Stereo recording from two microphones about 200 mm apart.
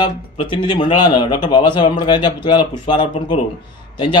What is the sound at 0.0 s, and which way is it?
A man's voice, 25° left (ahead or behind).